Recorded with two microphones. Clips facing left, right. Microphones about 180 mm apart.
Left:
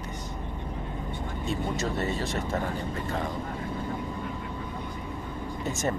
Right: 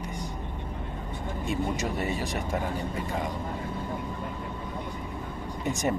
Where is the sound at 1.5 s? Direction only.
15° right (ahead or behind).